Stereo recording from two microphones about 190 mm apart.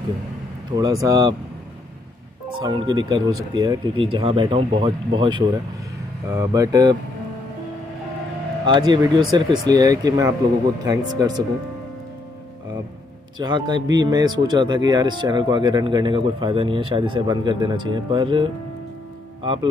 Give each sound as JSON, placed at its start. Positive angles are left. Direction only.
{"t": 0.7, "sound": "speech", "side_deg": -20}
{"t": 2.6, "sound": "speech", "side_deg": -25}
{"t": 8.6, "sound": "speech", "side_deg": -25}
{"t": 13.4, "sound": "speech", "side_deg": -25}